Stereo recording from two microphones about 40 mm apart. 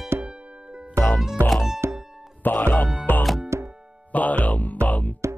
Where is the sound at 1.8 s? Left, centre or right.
Right.